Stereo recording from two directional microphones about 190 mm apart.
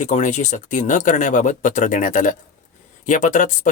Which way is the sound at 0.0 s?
40° left (ahead or behind).